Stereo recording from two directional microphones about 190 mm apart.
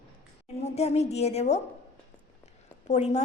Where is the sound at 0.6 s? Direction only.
35° left (ahead or behind).